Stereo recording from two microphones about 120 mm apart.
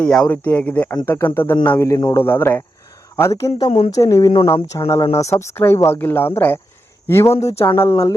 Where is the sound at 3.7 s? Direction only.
65° left (ahead or behind).